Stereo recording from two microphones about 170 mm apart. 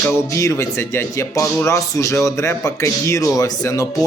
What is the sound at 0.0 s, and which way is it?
Speech, 15° left (ahead or behind).